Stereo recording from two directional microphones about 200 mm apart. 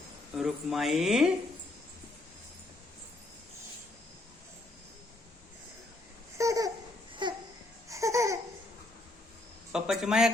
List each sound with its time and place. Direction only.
0.3 s speech: centre (ahead or behind)
6.3 s babbling: 15° right (ahead or behind)
7.1 s a sound: 25° right (ahead or behind)
7.9 s babbling: 15° right (ahead or behind)
9.7 s speech: centre (ahead or behind)